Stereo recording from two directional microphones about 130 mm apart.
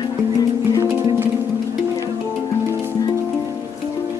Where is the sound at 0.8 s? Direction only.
20° right (ahead or behind).